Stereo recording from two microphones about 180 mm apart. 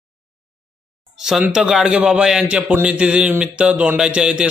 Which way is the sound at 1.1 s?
Centre (ahead or behind).